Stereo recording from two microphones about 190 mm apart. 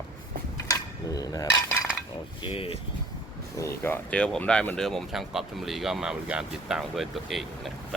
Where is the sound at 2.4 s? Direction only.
30° left (ahead or behind).